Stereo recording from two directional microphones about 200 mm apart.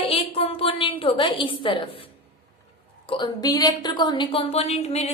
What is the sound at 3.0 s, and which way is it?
A woman's voice, 25° left (ahead or behind).